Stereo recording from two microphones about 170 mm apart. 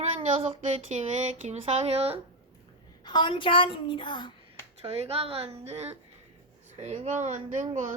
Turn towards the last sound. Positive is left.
turn(degrees=-45)  # may be behind; listen again after turning